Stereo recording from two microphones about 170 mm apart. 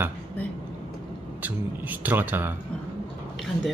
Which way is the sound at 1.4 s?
10° right (ahead or behind).